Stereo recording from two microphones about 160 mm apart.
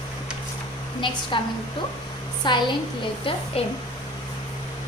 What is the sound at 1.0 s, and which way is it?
Speech, 30° left (ahead or behind).